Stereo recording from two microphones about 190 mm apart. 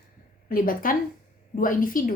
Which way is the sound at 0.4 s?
45° left (ahead or behind).